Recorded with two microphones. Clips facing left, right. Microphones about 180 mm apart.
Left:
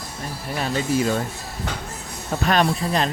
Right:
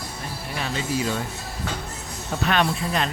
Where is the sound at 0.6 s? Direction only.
50° left (ahead or behind).